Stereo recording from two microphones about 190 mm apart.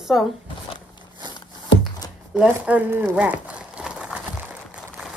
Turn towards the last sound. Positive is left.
turn(degrees=-5)  # may be behind; listen again after turning